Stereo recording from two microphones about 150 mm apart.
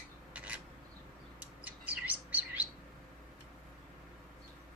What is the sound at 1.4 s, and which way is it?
Bird, 10° right (ahead or behind).